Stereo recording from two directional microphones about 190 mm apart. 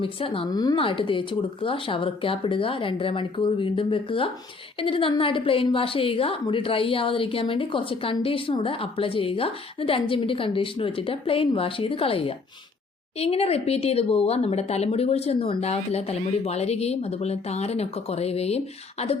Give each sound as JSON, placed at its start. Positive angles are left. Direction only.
{"t": 0.0, "sound": "a woman's voice", "side_deg": 30}